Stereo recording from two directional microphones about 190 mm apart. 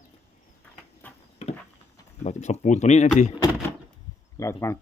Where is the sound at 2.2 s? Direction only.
35° left (ahead or behind).